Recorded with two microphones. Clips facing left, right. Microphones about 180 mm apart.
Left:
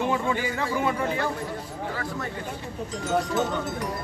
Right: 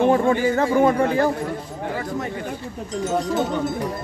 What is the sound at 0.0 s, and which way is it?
Speech, 55° right (ahead or behind).